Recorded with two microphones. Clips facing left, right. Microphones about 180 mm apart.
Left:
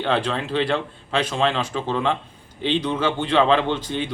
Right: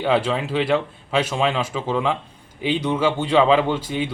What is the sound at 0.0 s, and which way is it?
A man's voice, 10° right (ahead or behind).